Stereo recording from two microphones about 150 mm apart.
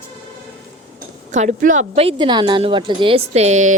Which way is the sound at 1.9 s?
35° right (ahead or behind).